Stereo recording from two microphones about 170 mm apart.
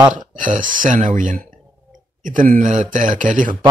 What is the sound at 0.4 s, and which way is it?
Speech, 50° right (ahead or behind).